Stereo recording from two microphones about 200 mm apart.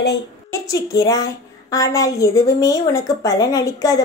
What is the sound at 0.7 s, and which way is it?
A woman's voice, 20° left (ahead or behind).